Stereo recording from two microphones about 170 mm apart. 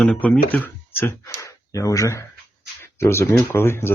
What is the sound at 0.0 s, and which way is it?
Speech, 5° left (ahead or behind).